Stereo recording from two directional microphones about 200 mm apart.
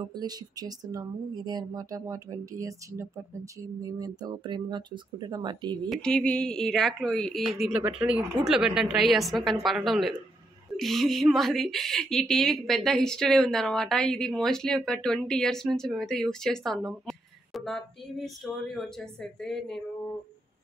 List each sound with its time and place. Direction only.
0.1 s speech: 20° right (ahead or behind)
5.9 s a woman's voice: 5° left (ahead or behind)